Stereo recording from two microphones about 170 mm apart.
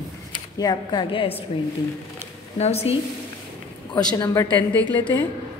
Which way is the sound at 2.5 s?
35° left (ahead or behind).